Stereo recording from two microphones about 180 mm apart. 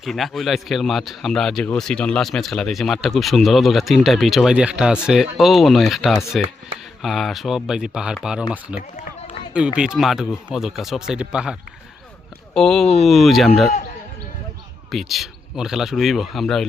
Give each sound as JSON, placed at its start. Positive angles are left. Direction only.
{"t": 0.0, "sound": "speech", "side_deg": 0}
{"t": 9.0, "sound": "run", "side_deg": 40}
{"t": 9.7, "sound": "speech", "side_deg": -5}
{"t": 12.5, "sound": "speech", "side_deg": 5}
{"t": 14.8, "sound": "speech", "side_deg": 0}